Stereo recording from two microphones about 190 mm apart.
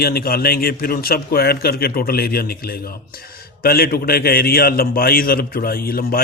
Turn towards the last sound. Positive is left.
turn(degrees=50)  # may be behind; listen again after turning